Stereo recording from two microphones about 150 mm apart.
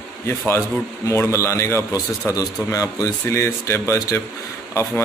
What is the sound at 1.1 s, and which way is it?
A man's voice, 20° left (ahead or behind).